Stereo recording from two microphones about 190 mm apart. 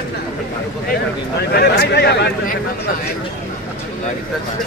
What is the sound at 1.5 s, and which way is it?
Speech, 55° left (ahead or behind).